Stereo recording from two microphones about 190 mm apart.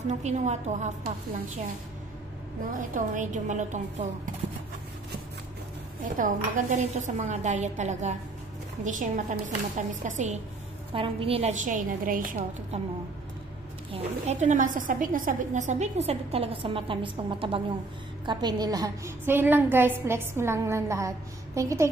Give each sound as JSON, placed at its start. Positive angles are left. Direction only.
{"t": 0.2, "sound": "a woman's voice", "side_deg": -35}
{"t": 2.9, "sound": "a woman's voice", "side_deg": -40}
{"t": 6.0, "sound": "a woman's voice", "side_deg": -45}
{"t": 10.9, "sound": "a woman's voice", "side_deg": -30}
{"t": 13.9, "sound": "a woman's voice", "side_deg": -35}